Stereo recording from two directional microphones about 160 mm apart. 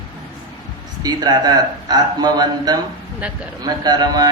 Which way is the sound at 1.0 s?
25° right (ahead or behind).